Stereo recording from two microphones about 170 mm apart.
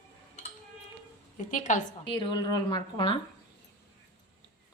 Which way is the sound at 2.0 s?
30° left (ahead or behind).